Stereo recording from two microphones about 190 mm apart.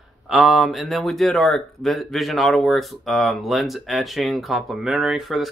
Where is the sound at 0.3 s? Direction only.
Centre (ahead or behind).